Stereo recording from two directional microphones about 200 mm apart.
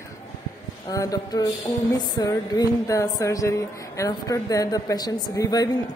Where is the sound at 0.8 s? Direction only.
20° left (ahead or behind).